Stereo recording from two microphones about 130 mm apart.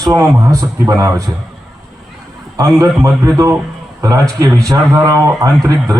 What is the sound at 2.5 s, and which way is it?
A man's voice, 30° right (ahead or behind).